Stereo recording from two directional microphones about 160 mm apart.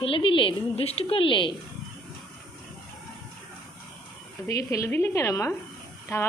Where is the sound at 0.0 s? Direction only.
35° left (ahead or behind).